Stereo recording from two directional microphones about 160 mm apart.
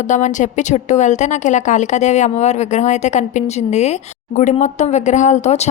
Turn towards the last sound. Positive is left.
turn(degrees=45)  # may be behind; listen again after turning